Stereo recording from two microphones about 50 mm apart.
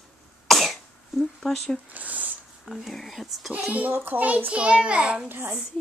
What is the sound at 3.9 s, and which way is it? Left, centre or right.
Speech, right.